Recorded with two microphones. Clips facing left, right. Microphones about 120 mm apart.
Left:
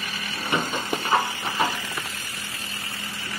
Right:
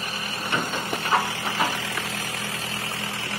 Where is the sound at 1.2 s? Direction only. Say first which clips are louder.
Even; 90° right.